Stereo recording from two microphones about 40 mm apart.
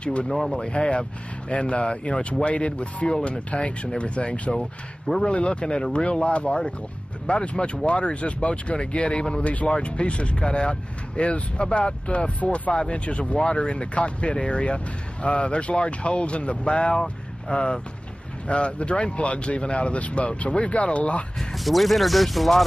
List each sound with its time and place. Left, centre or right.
0.0 s speech: left
4.6 s speech: centre
5.2 s speech: left
21.6 s speech: centre